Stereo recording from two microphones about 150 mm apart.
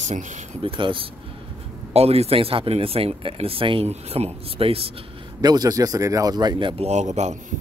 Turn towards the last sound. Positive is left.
turn(degrees=-50)  # may be behind; listen again after turning